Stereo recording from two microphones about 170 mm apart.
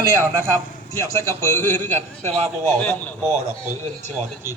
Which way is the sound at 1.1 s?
15° left (ahead or behind).